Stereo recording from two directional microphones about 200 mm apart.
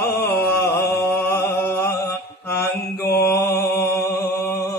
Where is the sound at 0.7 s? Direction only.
15° left (ahead or behind).